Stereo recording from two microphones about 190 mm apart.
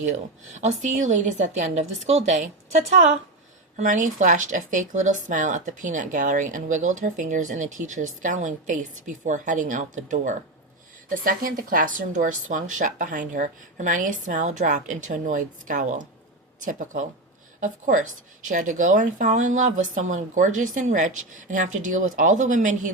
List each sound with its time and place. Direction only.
0.5 s speech: 40° right (ahead or behind)